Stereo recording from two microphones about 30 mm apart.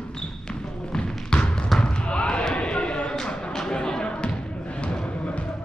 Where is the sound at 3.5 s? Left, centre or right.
Left.